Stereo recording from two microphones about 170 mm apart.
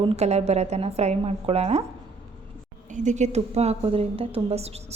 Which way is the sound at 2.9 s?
45° right (ahead or behind).